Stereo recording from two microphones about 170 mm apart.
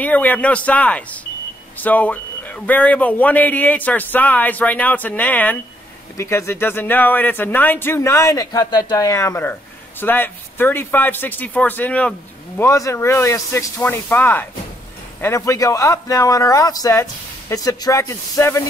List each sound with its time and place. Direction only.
0.0 s speech: 10° left (ahead or behind)